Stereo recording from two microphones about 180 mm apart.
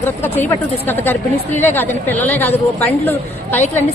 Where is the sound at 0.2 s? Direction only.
10° left (ahead or behind).